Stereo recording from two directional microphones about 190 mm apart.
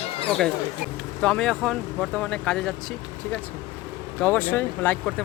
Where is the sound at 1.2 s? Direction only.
5° left (ahead or behind).